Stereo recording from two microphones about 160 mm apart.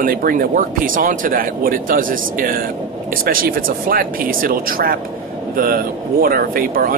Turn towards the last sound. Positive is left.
turn(degrees=-65)  # may be behind; listen again after turning